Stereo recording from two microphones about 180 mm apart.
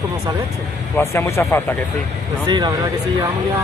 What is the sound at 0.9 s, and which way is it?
Speech, 15° left (ahead or behind).